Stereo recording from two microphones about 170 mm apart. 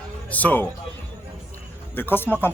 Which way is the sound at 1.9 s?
10° left (ahead or behind).